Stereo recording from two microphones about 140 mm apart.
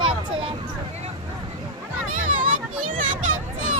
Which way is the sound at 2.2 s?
70° right (ahead or behind).